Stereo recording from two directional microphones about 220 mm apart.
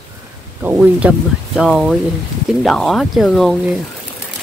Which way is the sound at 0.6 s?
5° right (ahead or behind).